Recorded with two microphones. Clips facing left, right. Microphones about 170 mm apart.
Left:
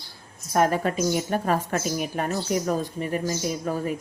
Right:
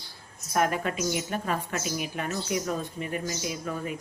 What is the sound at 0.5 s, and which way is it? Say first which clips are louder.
A woman's voice: left 5 dB; 35° left (ahead or behind).